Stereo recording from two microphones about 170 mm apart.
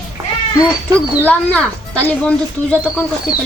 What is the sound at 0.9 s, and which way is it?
Speech, 10° left (ahead or behind).